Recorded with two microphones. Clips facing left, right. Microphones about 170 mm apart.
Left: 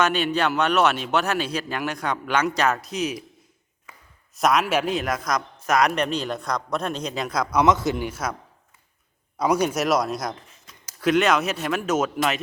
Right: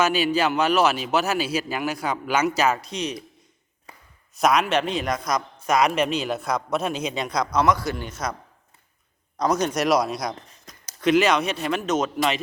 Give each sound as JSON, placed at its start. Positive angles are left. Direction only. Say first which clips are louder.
{"t": 0.0, "sound": "speech", "louder": "right 1 dB", "side_deg": -5}
{"t": 4.4, "sound": "speech", "louder": "right 1 dB", "side_deg": 0}
{"t": 7.5, "sound": "a man's voice", "louder": "left 3 dB", "side_deg": 20}
{"t": 8.0, "sound": "a man's voice", "louder": "left 2 dB", "side_deg": 5}
{"t": 9.4, "sound": "speech", "louder": "left 1 dB", "side_deg": 10}
{"t": 10.7, "sound": "a sound", "louder": "right 4 dB", "side_deg": -40}
{"t": 11.0, "sound": "speech", "louder": "right 1 dB", "side_deg": 0}